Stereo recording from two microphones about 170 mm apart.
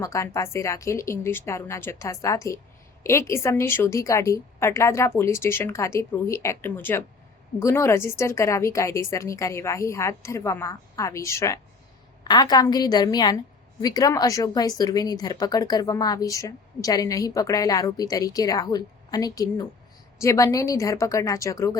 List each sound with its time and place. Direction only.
0.0 s a woman's voice: 15° left (ahead or behind)